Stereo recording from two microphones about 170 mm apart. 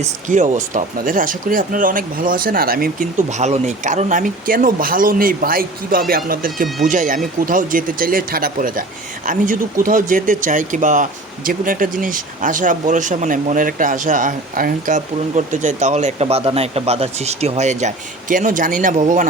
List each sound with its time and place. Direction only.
0.0 s speech: 45° right (ahead or behind)